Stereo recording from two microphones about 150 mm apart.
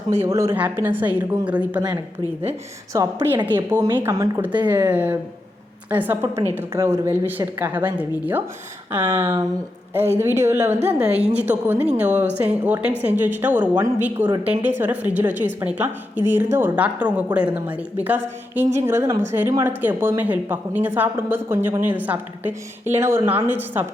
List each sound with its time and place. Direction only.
0.1 s speech: 15° right (ahead or behind)